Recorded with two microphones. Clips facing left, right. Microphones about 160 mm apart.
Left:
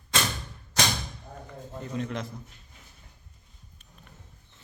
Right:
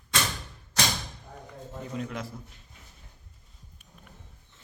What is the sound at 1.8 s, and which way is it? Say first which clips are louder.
Speech: left 2 dB; 5° right (ahead or behind).